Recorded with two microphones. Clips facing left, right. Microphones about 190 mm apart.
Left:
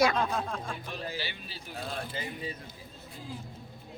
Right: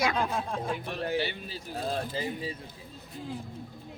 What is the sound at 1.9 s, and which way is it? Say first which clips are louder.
Speech: right 5 dB; 30° right (ahead or behind).